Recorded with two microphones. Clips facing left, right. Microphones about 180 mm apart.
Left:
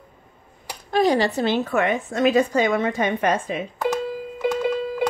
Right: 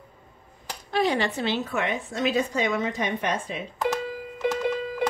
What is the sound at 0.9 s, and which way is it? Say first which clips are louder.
A woman's voice: left 5 dB; 40° left (ahead or behind).